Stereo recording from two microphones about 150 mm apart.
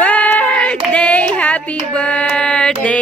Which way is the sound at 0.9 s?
10° left (ahead or behind).